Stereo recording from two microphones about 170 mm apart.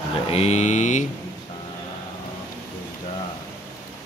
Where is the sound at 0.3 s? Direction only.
40° left (ahead or behind).